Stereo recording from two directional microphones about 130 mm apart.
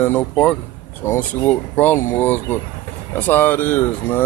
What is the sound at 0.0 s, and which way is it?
Speech, 15° left (ahead or behind).